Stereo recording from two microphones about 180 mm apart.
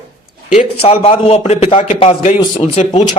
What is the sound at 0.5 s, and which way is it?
A man's voice, 35° left (ahead or behind).